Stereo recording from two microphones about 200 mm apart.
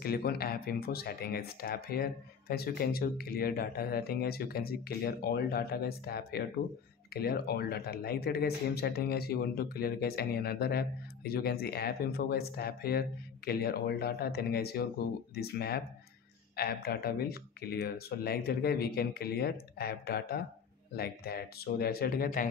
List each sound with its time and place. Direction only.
0.0 s speech: 50° left (ahead or behind)